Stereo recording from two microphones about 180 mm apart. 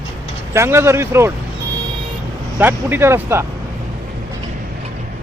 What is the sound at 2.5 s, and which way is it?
Speech, 10° right (ahead or behind).